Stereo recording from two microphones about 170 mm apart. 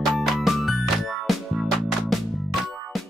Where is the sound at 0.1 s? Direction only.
Centre (ahead or behind).